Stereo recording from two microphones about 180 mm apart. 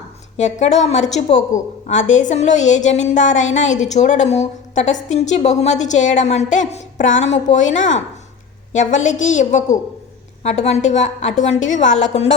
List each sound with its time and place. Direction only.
0.3 s a woman's voice: 40° left (ahead or behind)